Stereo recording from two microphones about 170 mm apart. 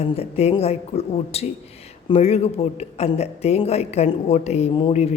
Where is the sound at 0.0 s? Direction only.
35° left (ahead or behind).